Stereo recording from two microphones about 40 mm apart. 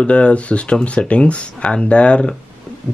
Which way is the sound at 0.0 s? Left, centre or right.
Left.